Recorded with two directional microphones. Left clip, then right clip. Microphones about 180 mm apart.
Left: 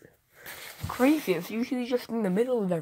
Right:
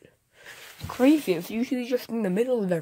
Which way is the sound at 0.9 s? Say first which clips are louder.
Right 3 dB; 35° right (ahead or behind).